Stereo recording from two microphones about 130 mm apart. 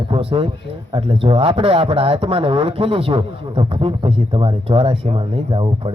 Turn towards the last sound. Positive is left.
turn(degrees=-40)  # may be behind; listen again after turning